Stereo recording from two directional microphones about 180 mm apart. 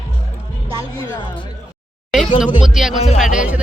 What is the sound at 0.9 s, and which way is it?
Speech, 25° left (ahead or behind).